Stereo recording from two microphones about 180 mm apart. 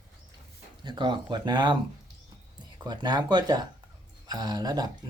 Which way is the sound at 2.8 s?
25° right (ahead or behind).